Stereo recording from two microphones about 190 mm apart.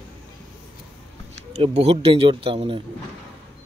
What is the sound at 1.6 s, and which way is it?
A man's voice, 30° right (ahead or behind).